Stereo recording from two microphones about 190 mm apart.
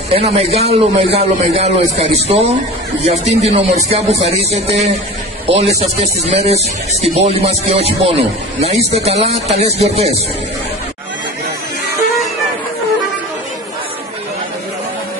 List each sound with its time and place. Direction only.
0.1 s speech: 30° right (ahead or behind)